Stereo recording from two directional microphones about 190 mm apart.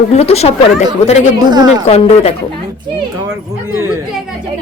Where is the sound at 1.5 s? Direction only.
20° right (ahead or behind).